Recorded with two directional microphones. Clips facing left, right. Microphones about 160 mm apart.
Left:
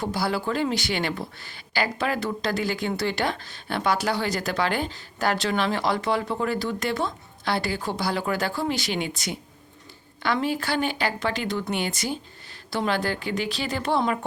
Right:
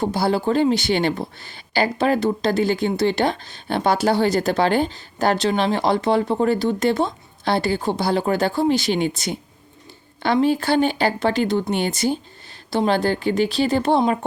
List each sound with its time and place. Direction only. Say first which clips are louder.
0.0 s speech: right 6 dB; 25° right (ahead or behind)